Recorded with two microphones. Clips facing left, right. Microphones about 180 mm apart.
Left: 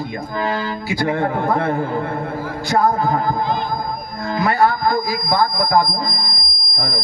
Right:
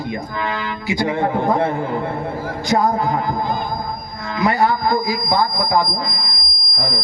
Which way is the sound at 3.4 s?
50° right (ahead or behind).